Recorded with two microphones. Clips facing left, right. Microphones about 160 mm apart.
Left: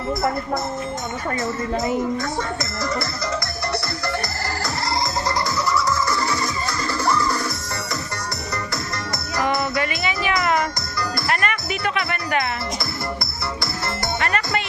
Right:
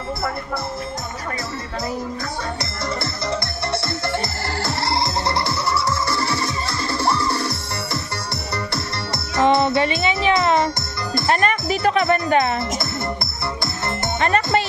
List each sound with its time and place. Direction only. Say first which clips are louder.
4.6 s music: right 2 dB; 30° right (ahead or behind)
9.4 s music: right 6 dB; 25° right (ahead or behind)
14.2 s music: right 7 dB; 30° right (ahead or behind)